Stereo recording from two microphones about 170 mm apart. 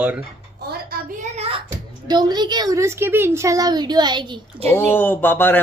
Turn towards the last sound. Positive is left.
turn(degrees=10)  # may be behind; listen again after turning